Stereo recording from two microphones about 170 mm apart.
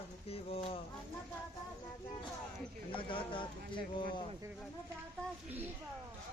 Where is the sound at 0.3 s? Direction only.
35° left (ahead or behind).